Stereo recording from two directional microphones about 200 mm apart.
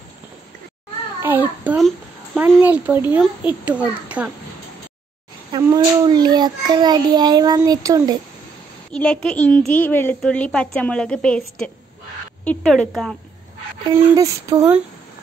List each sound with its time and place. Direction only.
1.2 s a child's voice: 10° right (ahead or behind)
5.5 s a child's voice: 20° right (ahead or behind)
8.9 s a woman's voice: 5° left (ahead or behind)
13.9 s a child's voice: 15° right (ahead or behind)